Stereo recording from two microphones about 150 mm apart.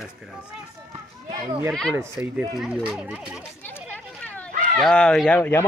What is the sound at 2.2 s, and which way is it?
Speech, 5° right (ahead or behind).